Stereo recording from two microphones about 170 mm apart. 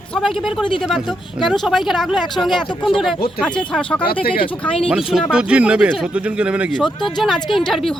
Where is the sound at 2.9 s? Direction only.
Centre (ahead or behind).